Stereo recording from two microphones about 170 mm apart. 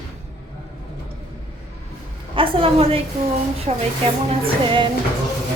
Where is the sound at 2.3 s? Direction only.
35° right (ahead or behind).